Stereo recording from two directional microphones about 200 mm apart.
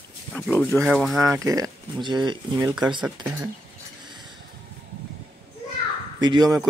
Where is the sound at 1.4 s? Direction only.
15° right (ahead or behind).